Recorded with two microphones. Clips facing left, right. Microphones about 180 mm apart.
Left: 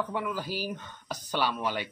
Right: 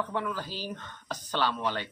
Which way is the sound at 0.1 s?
10° left (ahead or behind).